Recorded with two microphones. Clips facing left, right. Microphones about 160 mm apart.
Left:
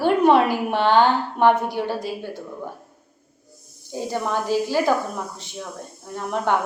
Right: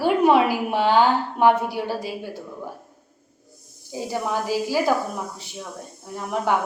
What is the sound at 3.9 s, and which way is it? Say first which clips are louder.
A woman's voice: left 1 dB; 5° right (ahead or behind).